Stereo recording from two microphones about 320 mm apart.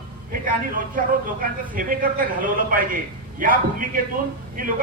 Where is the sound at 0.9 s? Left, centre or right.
Right.